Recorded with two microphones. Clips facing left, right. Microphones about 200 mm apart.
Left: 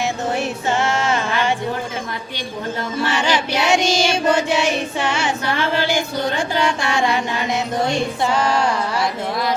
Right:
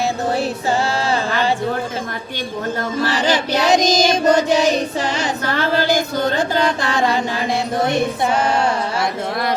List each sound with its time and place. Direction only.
0.0 s music: 35° right (ahead or behind)
3.0 s child singing: 35° right (ahead or behind)
7.9 s music: 20° right (ahead or behind)